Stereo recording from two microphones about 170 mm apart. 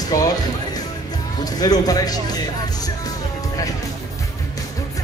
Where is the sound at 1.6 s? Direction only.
20° left (ahead or behind).